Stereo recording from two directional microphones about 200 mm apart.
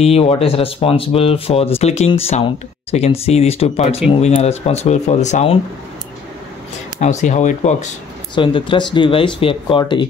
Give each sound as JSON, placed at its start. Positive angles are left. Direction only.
{"t": 0.0, "sound": "speech", "side_deg": 30}
{"t": 7.0, "sound": "speech", "side_deg": 35}
{"t": 8.4, "sound": "speech", "side_deg": 25}